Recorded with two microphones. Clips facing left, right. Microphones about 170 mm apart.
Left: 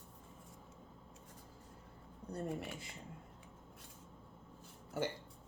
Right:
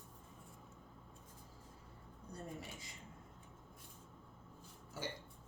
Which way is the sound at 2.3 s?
65° left (ahead or behind).